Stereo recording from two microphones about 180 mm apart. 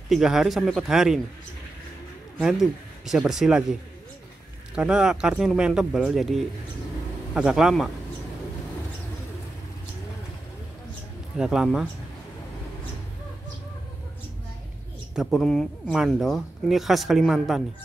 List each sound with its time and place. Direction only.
0.1 s speech: centre (ahead or behind)
2.3 s speech: centre (ahead or behind)
4.7 s speech: 5° right (ahead or behind)
11.3 s speech: 5° right (ahead or behind)
15.1 s speech: centre (ahead or behind)